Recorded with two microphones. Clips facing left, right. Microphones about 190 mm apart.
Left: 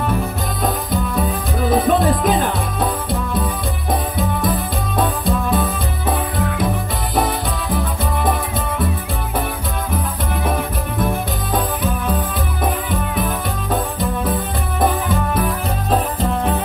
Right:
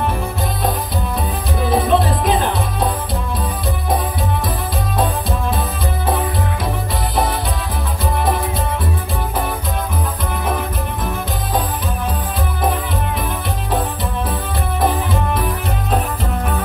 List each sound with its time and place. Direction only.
1.7 s music: 50° left (ahead or behind)